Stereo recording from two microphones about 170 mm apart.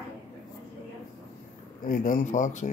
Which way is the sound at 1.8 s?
55° left (ahead or behind).